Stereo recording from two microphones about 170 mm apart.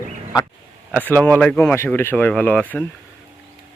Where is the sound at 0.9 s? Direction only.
10° left (ahead or behind).